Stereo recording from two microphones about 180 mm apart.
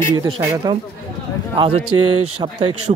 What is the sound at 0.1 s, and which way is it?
A man's voice, 20° right (ahead or behind).